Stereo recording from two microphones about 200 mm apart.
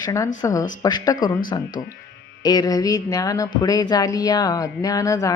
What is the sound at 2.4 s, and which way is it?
Speech, 20° left (ahead or behind).